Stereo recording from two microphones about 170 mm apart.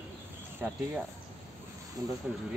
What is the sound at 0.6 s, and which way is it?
Speech, 15° right (ahead or behind).